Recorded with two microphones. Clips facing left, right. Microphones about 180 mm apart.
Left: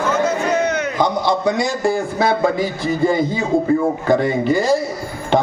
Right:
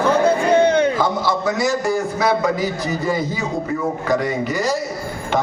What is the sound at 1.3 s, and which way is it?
A man's voice, 20° left (ahead or behind).